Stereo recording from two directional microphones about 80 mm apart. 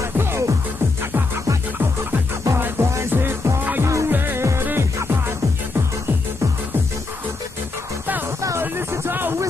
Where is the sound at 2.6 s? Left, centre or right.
Right.